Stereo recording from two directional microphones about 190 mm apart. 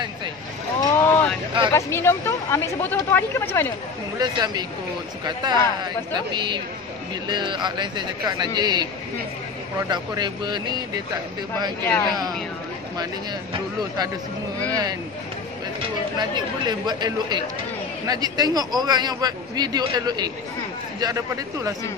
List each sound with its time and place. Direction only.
0.8 s boat: 10° left (ahead or behind)
1.7 s speech: 15° left (ahead or behind)
4.2 s a man's voice: 20° right (ahead or behind)
11.8 s speech: 10° left (ahead or behind)
14.7 s a man's voice: 20° right (ahead or behind)
16.2 s a man's voice: 20° right (ahead or behind)